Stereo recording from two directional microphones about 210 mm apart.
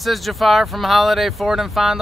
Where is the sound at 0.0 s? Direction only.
Centre (ahead or behind).